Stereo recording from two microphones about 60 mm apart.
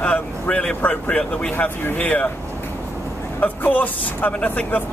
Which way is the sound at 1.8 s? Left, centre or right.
Left.